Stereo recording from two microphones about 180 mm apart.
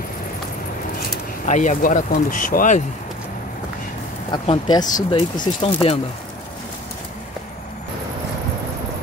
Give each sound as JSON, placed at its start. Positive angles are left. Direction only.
{"t": 1.4, "sound": "speech", "side_deg": 45}
{"t": 4.3, "sound": "speech", "side_deg": 25}